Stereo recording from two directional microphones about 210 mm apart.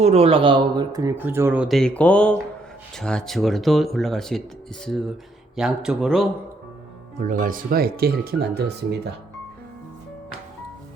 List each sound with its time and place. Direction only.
0.0 s speech: 30° right (ahead or behind); by 4.4 s centre (ahead or behind)
5.5 s speech: 5° right (ahead or behind)
7.2 s speech: 40° right (ahead or behind)